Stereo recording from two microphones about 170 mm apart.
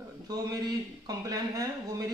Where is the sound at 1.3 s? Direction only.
20° right (ahead or behind).